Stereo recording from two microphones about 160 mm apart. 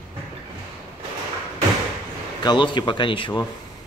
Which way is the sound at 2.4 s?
30° left (ahead or behind).